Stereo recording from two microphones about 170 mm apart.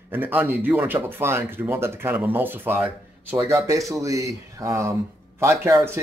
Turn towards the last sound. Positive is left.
turn(degrees=-15)  # may be behind; listen again after turning